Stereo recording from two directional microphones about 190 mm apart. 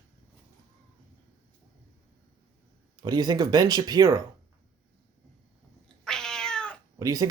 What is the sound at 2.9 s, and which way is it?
Speech, 25° right (ahead or behind).